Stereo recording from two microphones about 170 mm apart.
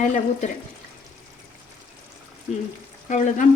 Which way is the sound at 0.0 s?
45° left (ahead or behind).